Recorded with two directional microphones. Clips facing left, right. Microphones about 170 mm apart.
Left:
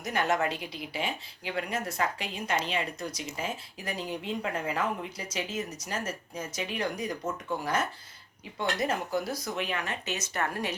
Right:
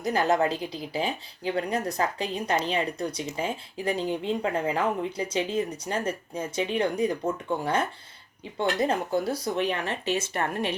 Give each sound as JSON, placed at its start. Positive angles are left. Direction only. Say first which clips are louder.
{"t": 0.0, "sound": "speech", "louder": "right 5 dB", "side_deg": -35}